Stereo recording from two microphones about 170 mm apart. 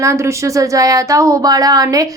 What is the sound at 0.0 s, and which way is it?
Speech, 15° right (ahead or behind).